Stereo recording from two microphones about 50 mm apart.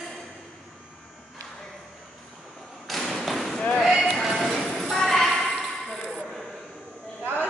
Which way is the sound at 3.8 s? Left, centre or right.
Centre.